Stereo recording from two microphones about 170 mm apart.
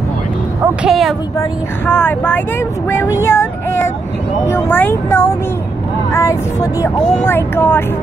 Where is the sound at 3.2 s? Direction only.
15° left (ahead or behind).